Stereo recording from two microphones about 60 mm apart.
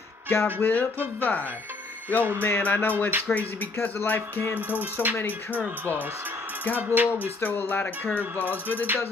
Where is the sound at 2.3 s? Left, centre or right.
Left.